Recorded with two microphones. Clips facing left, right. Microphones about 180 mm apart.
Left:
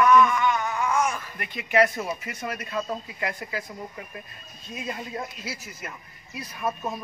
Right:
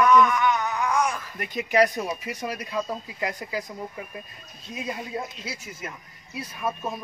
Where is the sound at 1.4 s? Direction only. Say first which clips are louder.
Right 1 dB; 40° right (ahead or behind).